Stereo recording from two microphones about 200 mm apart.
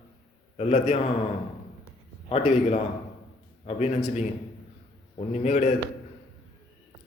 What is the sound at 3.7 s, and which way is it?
Speech, 35° left (ahead or behind).